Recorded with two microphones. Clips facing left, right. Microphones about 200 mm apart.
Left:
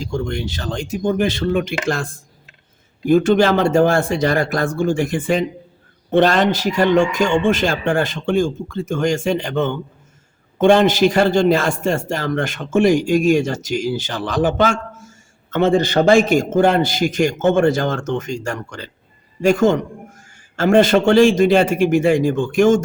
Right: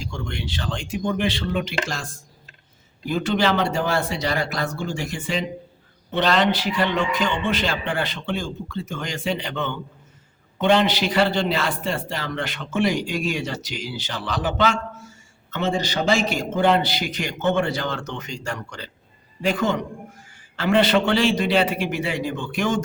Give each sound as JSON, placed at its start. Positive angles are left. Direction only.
{"t": 0.0, "sound": "a man's voice", "side_deg": 40}
{"t": 3.1, "sound": "a man's voice", "side_deg": 50}